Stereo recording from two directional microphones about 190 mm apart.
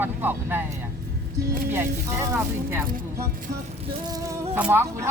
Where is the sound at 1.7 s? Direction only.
10° right (ahead or behind).